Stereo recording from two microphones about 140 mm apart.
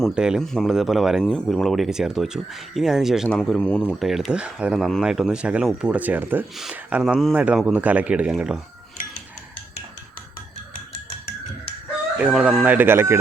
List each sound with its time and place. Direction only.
0.0 s speech: 5° right (ahead or behind)
12.2 s speech: 10° right (ahead or behind)